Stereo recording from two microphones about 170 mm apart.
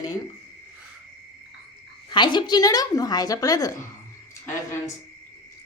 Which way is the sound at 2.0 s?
25° left (ahead or behind).